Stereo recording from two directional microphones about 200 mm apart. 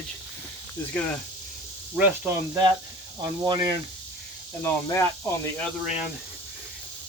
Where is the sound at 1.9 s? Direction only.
10° right (ahead or behind).